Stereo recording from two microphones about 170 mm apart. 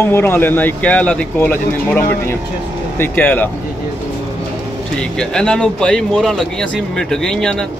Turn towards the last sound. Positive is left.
turn(degrees=5)  # may be behind; listen again after turning